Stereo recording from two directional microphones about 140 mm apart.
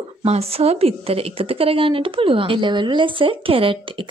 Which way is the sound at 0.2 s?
45° right (ahead or behind).